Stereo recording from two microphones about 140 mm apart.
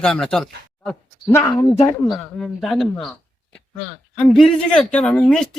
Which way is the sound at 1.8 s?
Centre (ahead or behind).